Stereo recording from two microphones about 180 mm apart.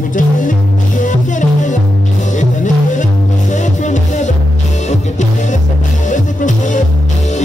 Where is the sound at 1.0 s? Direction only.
45° left (ahead or behind).